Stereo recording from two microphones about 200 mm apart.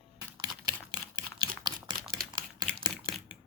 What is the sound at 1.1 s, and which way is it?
Typewriter, 20° right (ahead or behind).